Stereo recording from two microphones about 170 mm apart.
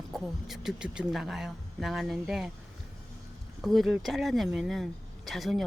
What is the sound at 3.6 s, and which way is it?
A child's voice, centre (ahead or behind).